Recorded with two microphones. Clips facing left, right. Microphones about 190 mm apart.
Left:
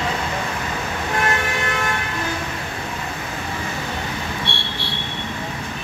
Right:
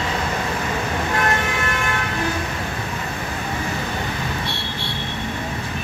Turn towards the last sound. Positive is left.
turn(degrees=30)  # may be behind; listen again after turning